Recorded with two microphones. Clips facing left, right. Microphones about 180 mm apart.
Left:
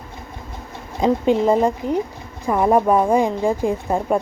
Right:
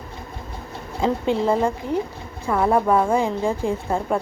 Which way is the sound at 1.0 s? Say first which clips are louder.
Left 4 dB; 15° left (ahead or behind).